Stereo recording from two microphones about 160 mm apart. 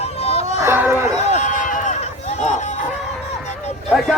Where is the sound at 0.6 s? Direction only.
15° right (ahead or behind).